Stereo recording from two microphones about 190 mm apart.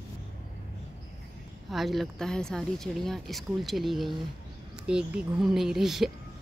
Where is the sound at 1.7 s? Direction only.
Centre (ahead or behind).